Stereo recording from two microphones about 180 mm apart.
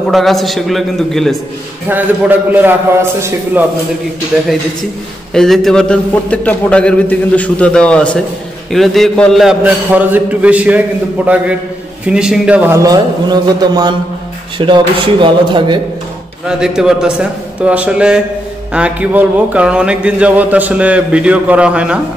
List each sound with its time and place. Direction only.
0.1 s a man's voice: centre (ahead or behind)
1.9 s a man's voice: 10° right (ahead or behind)
5.3 s a man's voice: centre (ahead or behind)
12.1 s a man's voice: 5° right (ahead or behind)
12.8 s speech: 20° right (ahead or behind)
16.4 s a man's voice: 5° right (ahead or behind)